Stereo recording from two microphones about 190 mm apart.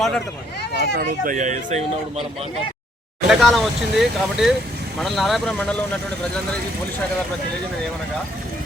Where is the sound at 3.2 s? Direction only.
Centre (ahead or behind).